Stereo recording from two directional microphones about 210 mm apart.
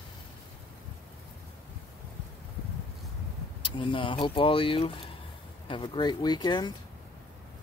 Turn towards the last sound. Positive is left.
turn(degrees=20)  # may be behind; listen again after turning